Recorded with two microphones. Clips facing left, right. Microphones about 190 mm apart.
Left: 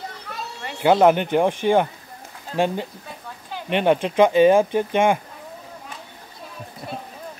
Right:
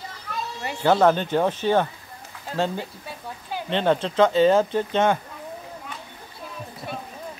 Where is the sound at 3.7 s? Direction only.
15° left (ahead or behind).